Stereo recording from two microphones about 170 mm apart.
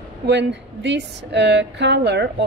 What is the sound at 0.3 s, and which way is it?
A woman's voice, 90° right.